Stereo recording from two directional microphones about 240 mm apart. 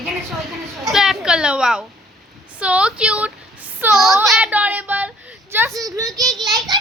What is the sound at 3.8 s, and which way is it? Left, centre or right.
Child singing, centre.